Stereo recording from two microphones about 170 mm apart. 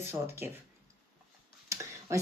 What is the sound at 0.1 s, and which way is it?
Speech, 15° right (ahead or behind).